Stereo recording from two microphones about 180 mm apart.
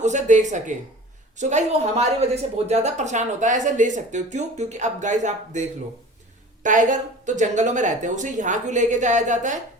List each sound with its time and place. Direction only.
0.0 s a woman's voice: 40° right (ahead or behind)